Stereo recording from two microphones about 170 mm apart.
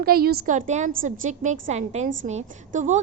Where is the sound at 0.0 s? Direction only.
65° right (ahead or behind).